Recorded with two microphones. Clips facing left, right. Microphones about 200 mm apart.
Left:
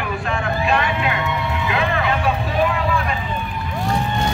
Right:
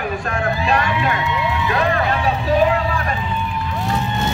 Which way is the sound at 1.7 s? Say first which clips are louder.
Right 1 dB; 40° right (ahead or behind).